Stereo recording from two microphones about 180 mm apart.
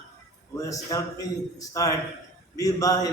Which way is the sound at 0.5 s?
20° left (ahead or behind).